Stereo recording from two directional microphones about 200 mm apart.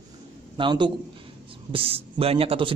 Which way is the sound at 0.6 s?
25° right (ahead or behind).